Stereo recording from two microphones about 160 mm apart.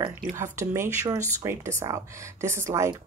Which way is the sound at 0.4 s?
20° right (ahead or behind).